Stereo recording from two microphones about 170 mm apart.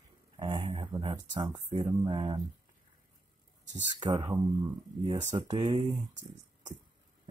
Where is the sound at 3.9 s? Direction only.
25° right (ahead or behind).